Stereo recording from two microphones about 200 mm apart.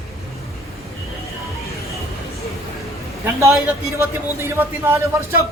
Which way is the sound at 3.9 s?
15° right (ahead or behind).